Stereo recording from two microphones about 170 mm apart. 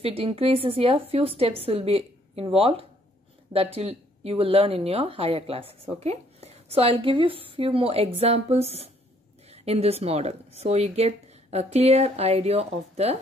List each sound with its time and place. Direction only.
0.0 s speech: 35° right (ahead or behind)